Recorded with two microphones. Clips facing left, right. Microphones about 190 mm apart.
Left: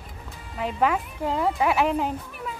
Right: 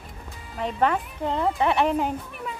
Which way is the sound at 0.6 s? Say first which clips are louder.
Even; 5° left (ahead or behind).